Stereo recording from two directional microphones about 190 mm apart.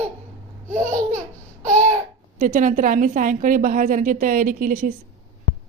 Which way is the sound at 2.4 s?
45° right (ahead or behind).